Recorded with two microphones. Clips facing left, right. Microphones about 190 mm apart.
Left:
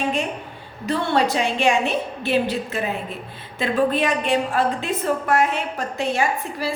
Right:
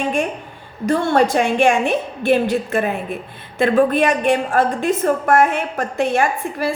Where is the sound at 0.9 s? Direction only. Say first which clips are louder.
Right 5 dB; 45° right (ahead or behind).